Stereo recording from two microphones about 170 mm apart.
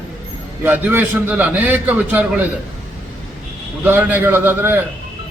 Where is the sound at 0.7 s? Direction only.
10° right (ahead or behind).